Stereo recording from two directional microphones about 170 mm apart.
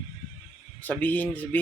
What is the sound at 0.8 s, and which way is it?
Speech, 10° left (ahead or behind).